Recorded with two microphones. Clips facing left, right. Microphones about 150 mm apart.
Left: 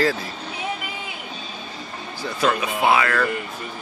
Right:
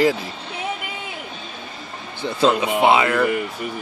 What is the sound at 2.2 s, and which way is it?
Speech, 25° right (ahead or behind).